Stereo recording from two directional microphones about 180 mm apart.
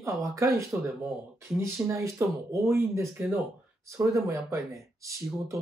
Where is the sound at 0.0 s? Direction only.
15° right (ahead or behind).